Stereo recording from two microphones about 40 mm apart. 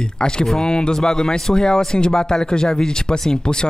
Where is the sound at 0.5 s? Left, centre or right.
Centre.